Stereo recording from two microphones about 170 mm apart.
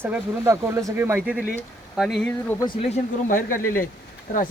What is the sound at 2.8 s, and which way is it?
Speech, 45° left (ahead or behind).